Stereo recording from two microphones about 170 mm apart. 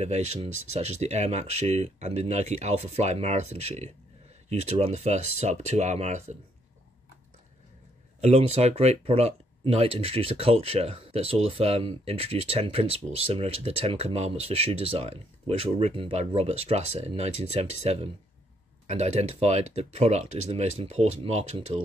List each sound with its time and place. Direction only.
0.0 s speech: 40° right (ahead or behind)
8.2 s speech: 40° right (ahead or behind)